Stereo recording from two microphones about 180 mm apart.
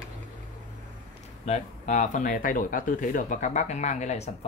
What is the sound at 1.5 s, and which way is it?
Speech, 40° left (ahead or behind).